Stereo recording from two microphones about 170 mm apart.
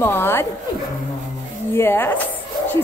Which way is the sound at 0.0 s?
15° left (ahead or behind).